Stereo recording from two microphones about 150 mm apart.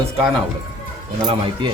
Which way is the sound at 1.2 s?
35° right (ahead or behind).